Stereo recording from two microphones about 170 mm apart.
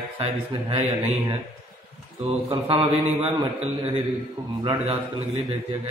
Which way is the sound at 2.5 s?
35° right (ahead or behind).